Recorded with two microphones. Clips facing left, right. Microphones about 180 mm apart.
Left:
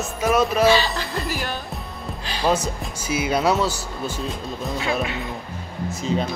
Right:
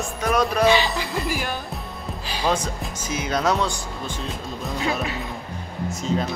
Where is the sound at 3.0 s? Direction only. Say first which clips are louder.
Left 3 dB; 10° left (ahead or behind).